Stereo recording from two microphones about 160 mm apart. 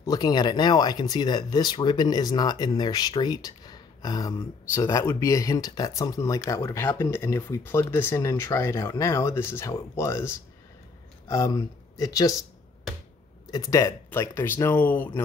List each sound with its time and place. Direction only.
0.0 s speech: 25° left (ahead or behind)
13.5 s speech: 20° left (ahead or behind)